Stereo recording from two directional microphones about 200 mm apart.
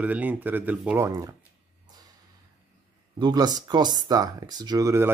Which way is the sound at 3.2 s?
20° right (ahead or behind).